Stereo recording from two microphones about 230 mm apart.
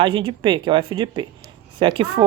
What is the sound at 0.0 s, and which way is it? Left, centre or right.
A woman's voice, right.